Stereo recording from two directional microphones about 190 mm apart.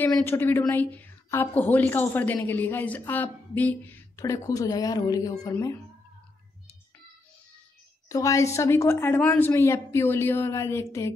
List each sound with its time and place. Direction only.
0.0 s a woman's voice: 10° left (ahead or behind)
8.1 s a woman's voice: 15° left (ahead or behind)